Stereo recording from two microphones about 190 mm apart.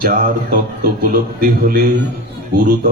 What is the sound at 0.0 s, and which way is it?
A man's voice, 50° right (ahead or behind).